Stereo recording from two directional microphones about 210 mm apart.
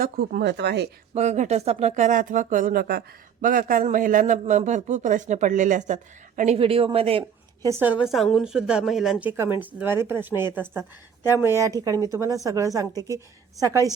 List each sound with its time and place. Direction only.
0.0 s speech: 45° right (ahead or behind)
1.1 s a man's voice: 35° right (ahead or behind)
7.7 s a woman's voice: 10° right (ahead or behind)